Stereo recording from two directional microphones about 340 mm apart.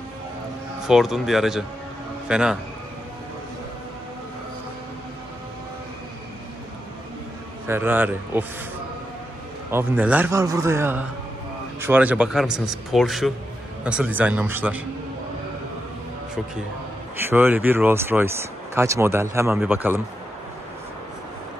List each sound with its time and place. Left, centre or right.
0.8 s speech: centre
7.6 s speech: centre
9.7 s speech: centre
17.2 s speech: centre